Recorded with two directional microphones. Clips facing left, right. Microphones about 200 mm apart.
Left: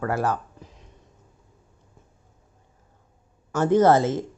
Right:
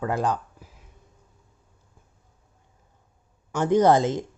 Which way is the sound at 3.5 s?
15° right (ahead or behind).